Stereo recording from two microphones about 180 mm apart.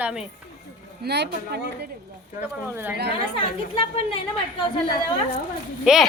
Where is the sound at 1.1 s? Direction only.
70° right (ahead or behind).